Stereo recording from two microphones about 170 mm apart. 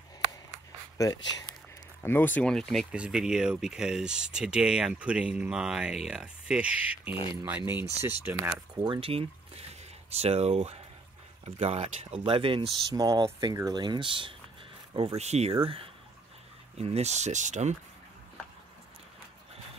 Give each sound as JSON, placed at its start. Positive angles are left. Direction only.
{"t": 0.9, "sound": "speech", "side_deg": 20}
{"t": 8.8, "sound": "speech", "side_deg": -30}
{"t": 12.9, "sound": "speech", "side_deg": -20}